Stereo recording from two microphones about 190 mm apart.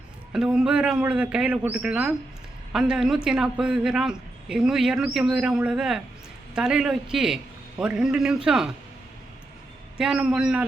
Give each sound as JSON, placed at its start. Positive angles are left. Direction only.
{"t": 0.3, "sound": "a man's voice", "side_deg": -5}
{"t": 10.0, "sound": "a man's voice", "side_deg": -5}